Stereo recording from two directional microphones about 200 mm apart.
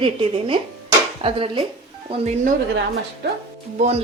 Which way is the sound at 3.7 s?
35° right (ahead or behind).